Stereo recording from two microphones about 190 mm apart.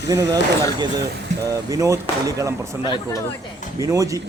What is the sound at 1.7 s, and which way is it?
Speech, 15° right (ahead or behind).